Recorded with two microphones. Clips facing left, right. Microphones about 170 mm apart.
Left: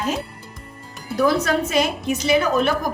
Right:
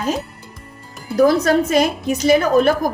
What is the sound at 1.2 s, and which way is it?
A woman's voice, 40° right (ahead or behind).